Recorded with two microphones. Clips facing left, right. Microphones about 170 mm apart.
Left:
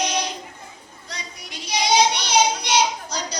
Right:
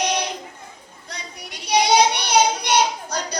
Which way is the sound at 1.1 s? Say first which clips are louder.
Right 1 dB; 60° right (ahead or behind).